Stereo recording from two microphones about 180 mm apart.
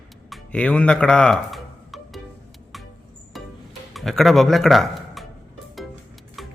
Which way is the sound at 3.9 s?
Centre (ahead or behind).